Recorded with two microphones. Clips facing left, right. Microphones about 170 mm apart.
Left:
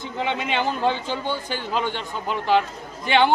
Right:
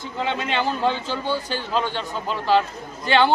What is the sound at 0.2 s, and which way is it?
A man's voice, 15° left (ahead or behind).